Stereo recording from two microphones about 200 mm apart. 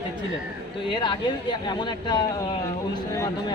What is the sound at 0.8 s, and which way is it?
Speech, 25° left (ahead or behind).